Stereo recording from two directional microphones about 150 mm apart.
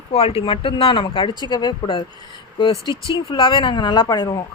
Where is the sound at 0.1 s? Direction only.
40° left (ahead or behind).